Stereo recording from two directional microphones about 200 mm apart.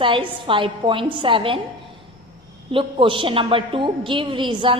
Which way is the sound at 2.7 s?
25° right (ahead or behind).